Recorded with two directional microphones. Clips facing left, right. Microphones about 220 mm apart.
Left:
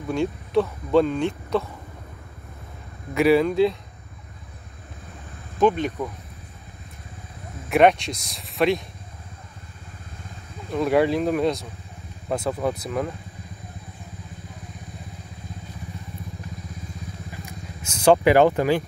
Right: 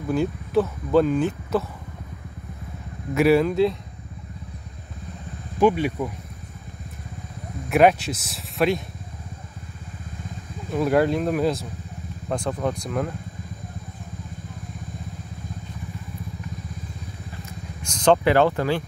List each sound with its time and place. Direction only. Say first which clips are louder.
0.1 s speech: right 1 dB; 5° right (ahead or behind)
3.2 s speech: even; centre (ahead or behind)
5.6 s speech: right 1 dB; 10° right (ahead or behind)
7.7 s speech: even; 5° right (ahead or behind)
10.7 s speech: even; centre (ahead or behind)
17.8 s speech: left 2 dB; 5° left (ahead or behind)